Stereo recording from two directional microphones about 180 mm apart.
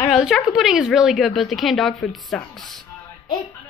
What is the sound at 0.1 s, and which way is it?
A woman's voice, centre (ahead or behind).